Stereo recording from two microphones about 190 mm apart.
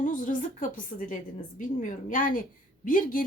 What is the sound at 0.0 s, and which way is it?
A woman's voice, 45° left (ahead or behind).